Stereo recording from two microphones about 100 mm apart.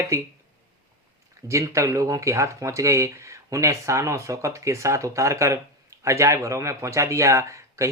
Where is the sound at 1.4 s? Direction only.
30° right (ahead or behind).